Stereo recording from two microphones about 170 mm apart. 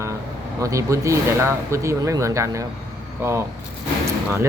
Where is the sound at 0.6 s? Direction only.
20° right (ahead or behind).